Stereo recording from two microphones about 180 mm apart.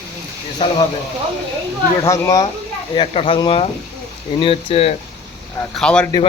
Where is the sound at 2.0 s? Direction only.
15° left (ahead or behind).